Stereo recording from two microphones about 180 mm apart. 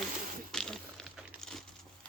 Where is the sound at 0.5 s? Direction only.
5° left (ahead or behind).